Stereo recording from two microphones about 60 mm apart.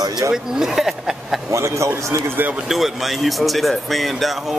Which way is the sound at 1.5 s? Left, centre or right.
Right.